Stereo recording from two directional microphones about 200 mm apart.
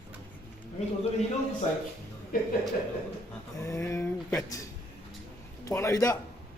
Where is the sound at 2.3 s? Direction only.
45° left (ahead or behind).